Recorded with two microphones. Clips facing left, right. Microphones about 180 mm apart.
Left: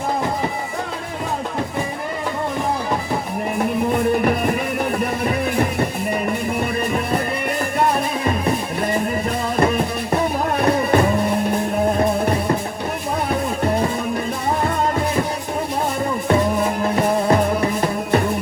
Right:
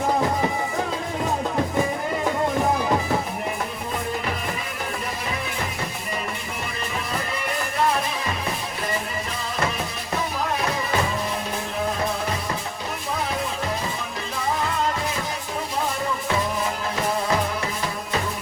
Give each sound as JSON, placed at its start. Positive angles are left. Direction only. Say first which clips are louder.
{"t": 3.9, "sound": "music", "louder": "left 8 dB", "side_deg": 55}
{"t": 9.6, "sound": "music", "louder": "left 8 dB", "side_deg": 55}
{"t": 16.3, "sound": "music", "louder": "left 9 dB", "side_deg": 55}